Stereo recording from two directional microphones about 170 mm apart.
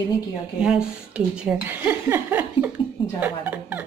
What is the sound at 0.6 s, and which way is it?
Speech, 5° right (ahead or behind).